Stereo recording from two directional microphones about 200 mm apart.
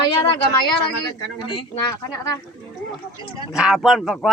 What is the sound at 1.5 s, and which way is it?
Speech, 20° left (ahead or behind).